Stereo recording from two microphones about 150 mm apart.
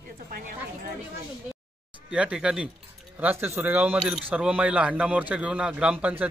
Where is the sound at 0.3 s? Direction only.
85° right.